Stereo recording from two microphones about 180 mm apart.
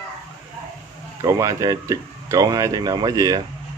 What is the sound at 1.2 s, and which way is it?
Speech, 15° right (ahead or behind).